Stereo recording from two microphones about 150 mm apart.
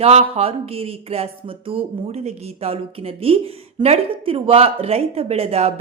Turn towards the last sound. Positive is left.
turn(degrees=-45)  # may be behind; listen again after turning